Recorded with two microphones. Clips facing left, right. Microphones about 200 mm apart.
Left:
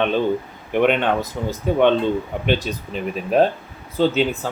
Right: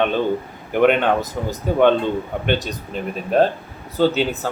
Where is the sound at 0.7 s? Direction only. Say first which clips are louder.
Right 2 dB; 5° right (ahead or behind).